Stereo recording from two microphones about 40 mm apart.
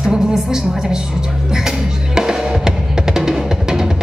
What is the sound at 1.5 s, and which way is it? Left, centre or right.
Drum, centre.